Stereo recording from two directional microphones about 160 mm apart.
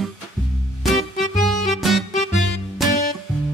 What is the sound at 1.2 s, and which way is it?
Music, 50° left (ahead or behind).